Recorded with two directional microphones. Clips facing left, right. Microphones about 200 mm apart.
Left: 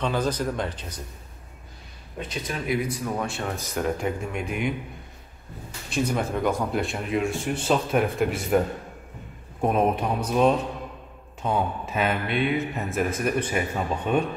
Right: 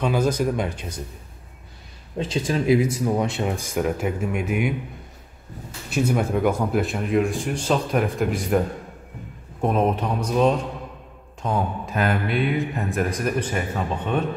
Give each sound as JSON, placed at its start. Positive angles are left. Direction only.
{"t": 0.0, "sound": "speech", "side_deg": -10}
{"t": 2.3, "sound": "speech", "side_deg": -30}
{"t": 5.9, "sound": "speech", "side_deg": -5}